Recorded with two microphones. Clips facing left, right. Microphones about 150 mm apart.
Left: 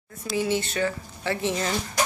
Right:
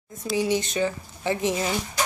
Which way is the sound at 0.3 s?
15° right (ahead or behind).